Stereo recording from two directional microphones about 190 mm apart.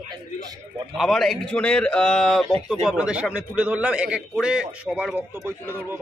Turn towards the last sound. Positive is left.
turn(degrees=-10)  # may be behind; listen again after turning